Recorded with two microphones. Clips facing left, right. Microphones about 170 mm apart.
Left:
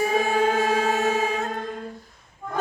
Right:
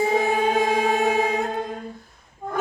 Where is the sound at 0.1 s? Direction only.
15° right (ahead or behind).